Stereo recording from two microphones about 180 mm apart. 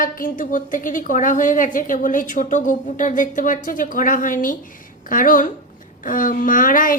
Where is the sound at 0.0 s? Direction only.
50° left (ahead or behind).